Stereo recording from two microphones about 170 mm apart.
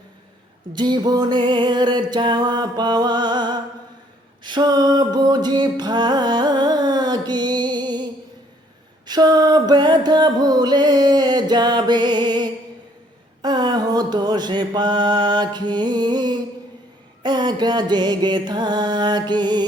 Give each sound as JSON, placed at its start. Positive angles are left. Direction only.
{"t": 0.7, "sound": "music", "side_deg": -25}
{"t": 13.4, "sound": "mantra", "side_deg": -25}
{"t": 17.2, "sound": "music", "side_deg": -25}